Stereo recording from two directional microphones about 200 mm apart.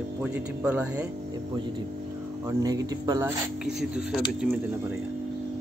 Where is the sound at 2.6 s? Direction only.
15° right (ahead or behind).